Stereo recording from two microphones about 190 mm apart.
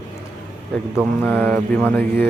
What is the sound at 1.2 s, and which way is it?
Mantra, 10° left (ahead or behind).